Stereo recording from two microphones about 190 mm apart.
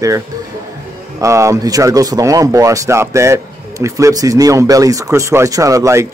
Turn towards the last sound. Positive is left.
turn(degrees=-15)  # may be behind; listen again after turning